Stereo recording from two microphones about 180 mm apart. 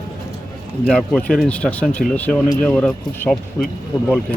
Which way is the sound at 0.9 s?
5° left (ahead or behind).